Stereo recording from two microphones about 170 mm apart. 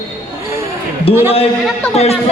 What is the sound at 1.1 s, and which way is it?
Speech, 35° left (ahead or behind).